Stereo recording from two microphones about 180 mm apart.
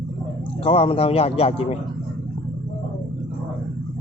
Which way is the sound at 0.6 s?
30° left (ahead or behind).